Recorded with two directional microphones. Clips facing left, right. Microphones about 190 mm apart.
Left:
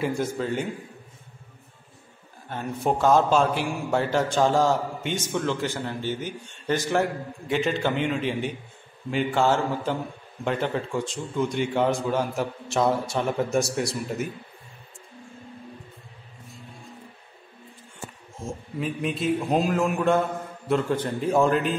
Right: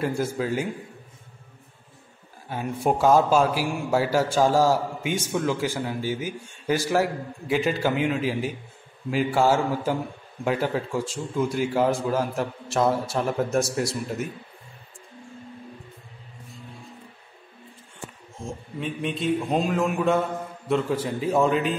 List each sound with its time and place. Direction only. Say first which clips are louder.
0.0 s a man's voice: right 1 dB; 5° right (ahead or behind)
2.5 s a man's voice: right 1 dB; 10° right (ahead or behind)
18.5 s a man's voice: left 2 dB; centre (ahead or behind)